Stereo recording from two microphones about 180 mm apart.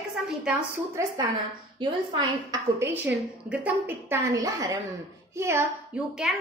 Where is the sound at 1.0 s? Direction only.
15° right (ahead or behind).